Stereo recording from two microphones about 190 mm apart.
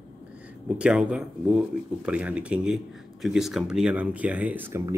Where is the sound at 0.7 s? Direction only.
5° right (ahead or behind).